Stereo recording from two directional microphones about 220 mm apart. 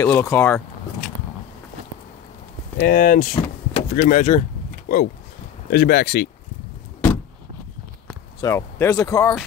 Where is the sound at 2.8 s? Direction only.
40° left (ahead or behind).